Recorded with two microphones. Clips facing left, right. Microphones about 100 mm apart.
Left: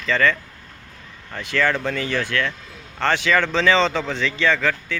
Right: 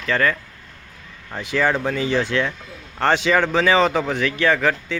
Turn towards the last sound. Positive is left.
turn(degrees=-15)  # may be behind; listen again after turning